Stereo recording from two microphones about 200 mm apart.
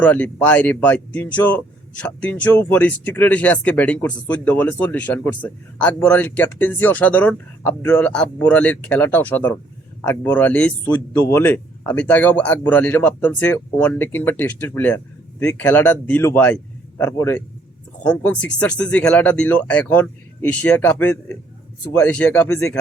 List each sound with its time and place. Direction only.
0.0 s speech: 10° left (ahead or behind)